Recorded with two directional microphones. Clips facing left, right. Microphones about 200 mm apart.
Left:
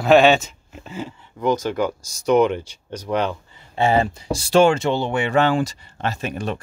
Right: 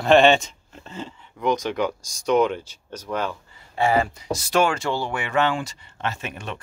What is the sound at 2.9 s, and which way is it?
Speech, 20° left (ahead or behind).